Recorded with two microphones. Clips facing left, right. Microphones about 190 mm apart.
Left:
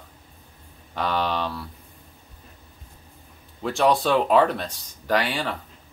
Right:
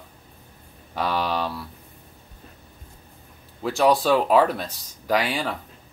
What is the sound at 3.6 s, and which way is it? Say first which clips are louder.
Speech: right 1 dB; centre (ahead or behind).